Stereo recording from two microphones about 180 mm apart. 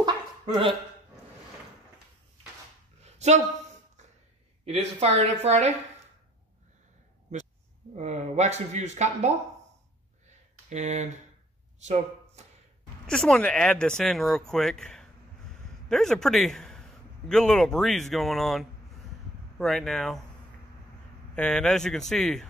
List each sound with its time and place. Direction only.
0.0 s a sound: 25° right (ahead or behind)
3.0 s a sound: 40° right (ahead or behind)
4.6 s speech: 35° right (ahead or behind)
7.9 s speech: 40° right (ahead or behind)
10.7 s speech: 40° right (ahead or behind)
13.0 s a man's voice: 5° left (ahead or behind)
21.4 s speech: 5° left (ahead or behind)